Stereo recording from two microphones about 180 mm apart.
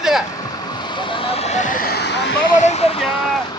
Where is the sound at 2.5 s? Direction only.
40° left (ahead or behind).